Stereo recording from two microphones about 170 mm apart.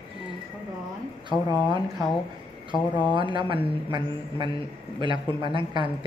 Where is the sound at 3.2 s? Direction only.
30° right (ahead or behind).